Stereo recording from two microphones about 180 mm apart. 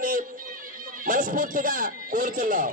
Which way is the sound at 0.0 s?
50° right (ahead or behind).